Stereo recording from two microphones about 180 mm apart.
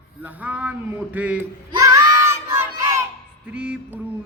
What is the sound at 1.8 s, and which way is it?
Child singing, 15° right (ahead or behind).